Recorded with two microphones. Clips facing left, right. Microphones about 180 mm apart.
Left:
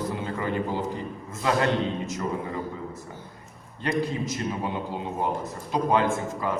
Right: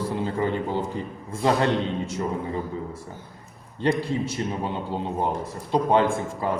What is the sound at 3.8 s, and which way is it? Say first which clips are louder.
Speech: right 3 dB; 30° right (ahead or behind).